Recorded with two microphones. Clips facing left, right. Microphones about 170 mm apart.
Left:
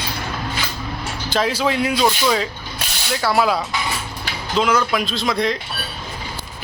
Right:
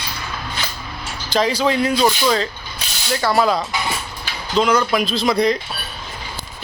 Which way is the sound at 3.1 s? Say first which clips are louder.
Right 1 dB; 5° left (ahead or behind).